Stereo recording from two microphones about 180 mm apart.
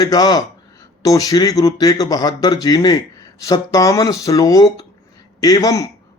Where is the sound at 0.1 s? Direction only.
20° left (ahead or behind).